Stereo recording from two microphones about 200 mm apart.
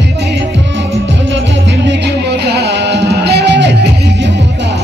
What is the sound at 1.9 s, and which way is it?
Music, 55° right (ahead or behind).